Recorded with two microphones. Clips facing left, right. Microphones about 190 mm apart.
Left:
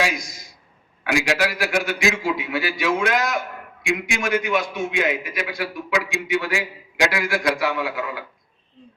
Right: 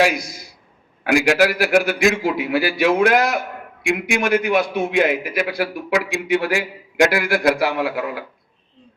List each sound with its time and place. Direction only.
0.0 s a man's voice: 60° right (ahead or behind)